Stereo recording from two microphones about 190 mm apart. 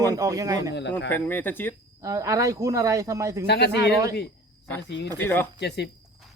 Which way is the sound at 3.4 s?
60° left (ahead or behind).